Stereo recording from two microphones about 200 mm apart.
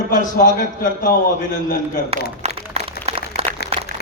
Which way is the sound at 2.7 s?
30° right (ahead or behind).